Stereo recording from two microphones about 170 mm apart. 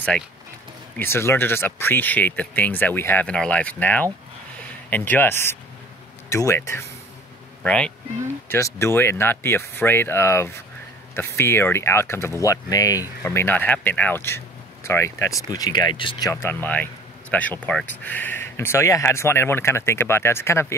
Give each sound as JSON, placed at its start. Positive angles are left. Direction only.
{"t": 0.9, "sound": "speech", "side_deg": 15}
{"t": 8.5, "sound": "speech", "side_deg": 15}